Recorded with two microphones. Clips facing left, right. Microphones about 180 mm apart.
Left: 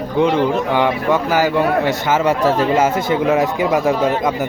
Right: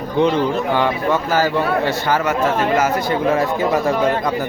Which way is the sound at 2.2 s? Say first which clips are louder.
Left 3 dB; 30° left (ahead or behind).